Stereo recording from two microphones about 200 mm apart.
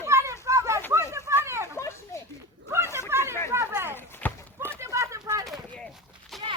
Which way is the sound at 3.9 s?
10° left (ahead or behind).